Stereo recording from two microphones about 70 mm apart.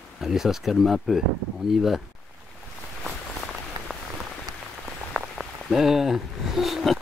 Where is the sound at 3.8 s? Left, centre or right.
Right.